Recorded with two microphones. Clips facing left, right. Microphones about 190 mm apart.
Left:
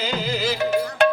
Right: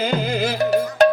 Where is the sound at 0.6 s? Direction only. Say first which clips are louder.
Right 4 dB; 40° right (ahead or behind).